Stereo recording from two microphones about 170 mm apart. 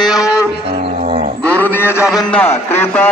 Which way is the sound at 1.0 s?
40° right (ahead or behind).